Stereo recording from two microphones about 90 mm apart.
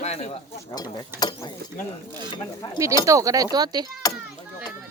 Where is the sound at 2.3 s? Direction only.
60° left (ahead or behind).